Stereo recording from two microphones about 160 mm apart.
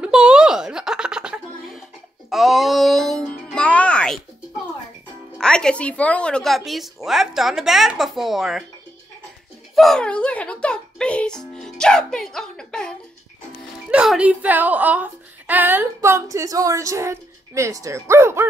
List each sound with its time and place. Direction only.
0.0 s a sound: 5° right (ahead or behind)
2.2 s music: centre (ahead or behind)
5.4 s a woman's voice: 5° left (ahead or behind)
9.8 s music: 5° left (ahead or behind)
13.8 s speech: 5° right (ahead or behind)